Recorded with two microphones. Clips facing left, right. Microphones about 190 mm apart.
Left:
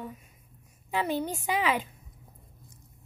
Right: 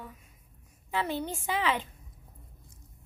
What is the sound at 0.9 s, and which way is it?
Child singing, 15° left (ahead or behind).